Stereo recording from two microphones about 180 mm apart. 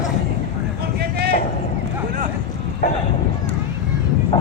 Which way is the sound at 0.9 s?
65° right (ahead or behind).